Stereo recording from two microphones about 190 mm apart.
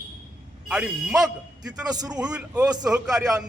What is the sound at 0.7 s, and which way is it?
A man's voice, 5° right (ahead or behind).